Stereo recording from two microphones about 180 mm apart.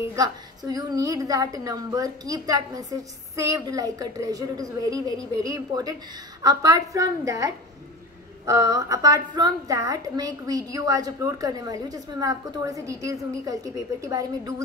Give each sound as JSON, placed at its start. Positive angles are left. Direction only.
{"t": 0.0, "sound": "a woman's voice", "side_deg": -20}